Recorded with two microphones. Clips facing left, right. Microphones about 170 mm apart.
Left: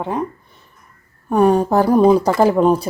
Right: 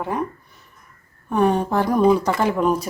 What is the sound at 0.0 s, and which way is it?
Speech, 20° left (ahead or behind).